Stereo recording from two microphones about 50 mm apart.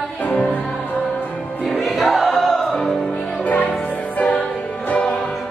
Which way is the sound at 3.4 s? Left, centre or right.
Left.